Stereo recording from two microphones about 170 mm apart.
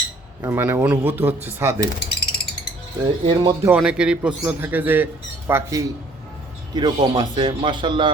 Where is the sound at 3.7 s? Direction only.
5° right (ahead or behind).